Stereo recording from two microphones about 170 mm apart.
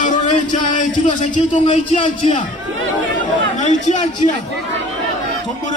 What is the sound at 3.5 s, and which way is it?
Speech, 45° left (ahead or behind).